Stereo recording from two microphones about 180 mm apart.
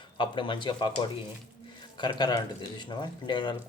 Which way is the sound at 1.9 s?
25° left (ahead or behind).